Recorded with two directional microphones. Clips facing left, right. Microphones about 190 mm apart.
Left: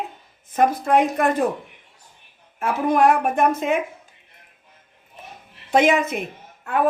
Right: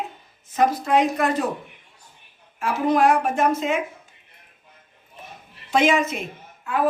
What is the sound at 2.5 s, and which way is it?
A woman's voice, 55° left (ahead or behind).